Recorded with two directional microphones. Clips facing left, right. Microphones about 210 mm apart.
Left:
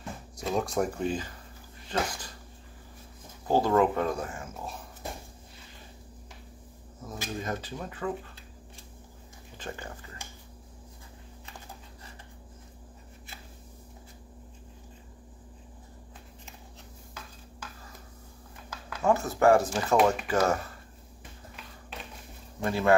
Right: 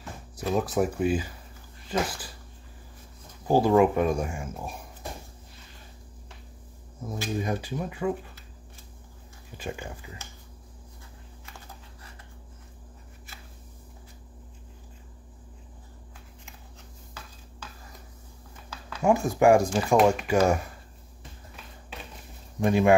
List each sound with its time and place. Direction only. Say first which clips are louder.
0.4 s speech: right 3 dB; 5° right (ahead or behind)
3.4 s speech: right 4 dB; 10° right (ahead or behind)
7.0 s speech: right 5 dB; 10° right (ahead or behind)
9.6 s speech: right 4 dB; 10° right (ahead or behind)
19.0 s speech: right 3 dB; 15° right (ahead or behind)
22.6 s speech: right 4 dB; 15° right (ahead or behind)